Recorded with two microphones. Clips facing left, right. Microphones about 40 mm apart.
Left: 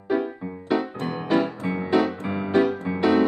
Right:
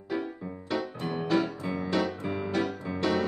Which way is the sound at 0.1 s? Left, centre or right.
Left.